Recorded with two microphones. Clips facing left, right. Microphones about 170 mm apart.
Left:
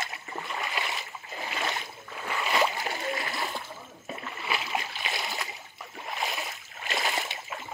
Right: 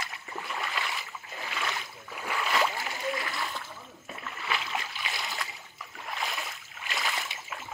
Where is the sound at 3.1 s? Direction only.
30° left (ahead or behind).